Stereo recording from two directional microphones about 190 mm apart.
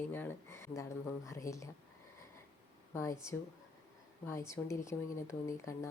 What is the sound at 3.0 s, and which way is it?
A woman's voice, 15° left (ahead or behind).